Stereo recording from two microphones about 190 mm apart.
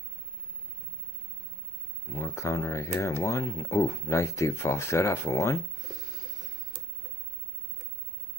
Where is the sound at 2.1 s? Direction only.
15° left (ahead or behind).